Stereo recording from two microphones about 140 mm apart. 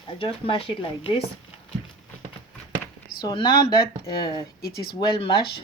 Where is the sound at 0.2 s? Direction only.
40° left (ahead or behind).